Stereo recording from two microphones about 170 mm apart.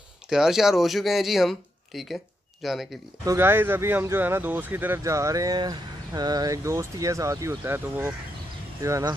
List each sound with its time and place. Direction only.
0.3 s speech: 5° right (ahead or behind)
3.3 s speech: 15° right (ahead or behind)